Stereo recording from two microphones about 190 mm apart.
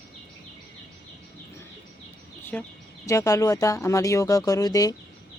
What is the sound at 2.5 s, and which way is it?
Speech, 5° left (ahead or behind).